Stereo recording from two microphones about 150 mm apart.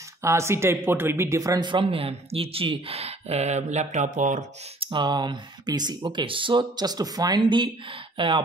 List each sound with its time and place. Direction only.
0.2 s a man's voice: 20° right (ahead or behind); by 4.5 s 55° right (ahead or behind)
4.8 s a man's voice: 30° right (ahead or behind)